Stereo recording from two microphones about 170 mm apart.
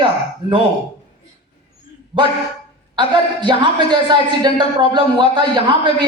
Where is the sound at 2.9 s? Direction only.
30° right (ahead or behind).